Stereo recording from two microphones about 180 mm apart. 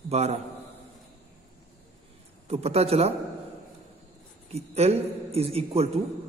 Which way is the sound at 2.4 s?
35° right (ahead or behind).